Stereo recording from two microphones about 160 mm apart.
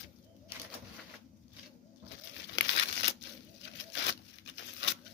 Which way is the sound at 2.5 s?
90° left.